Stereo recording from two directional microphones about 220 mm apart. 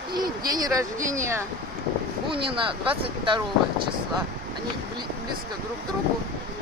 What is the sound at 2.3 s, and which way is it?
Speech, 25° right (ahead or behind).